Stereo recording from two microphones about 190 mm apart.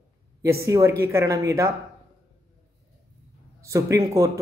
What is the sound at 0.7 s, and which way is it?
A man's voice, 15° right (ahead or behind).